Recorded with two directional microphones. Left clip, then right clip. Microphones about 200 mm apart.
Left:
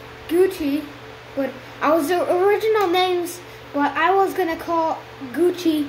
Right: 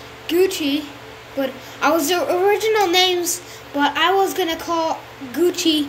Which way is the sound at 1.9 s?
Centre (ahead or behind).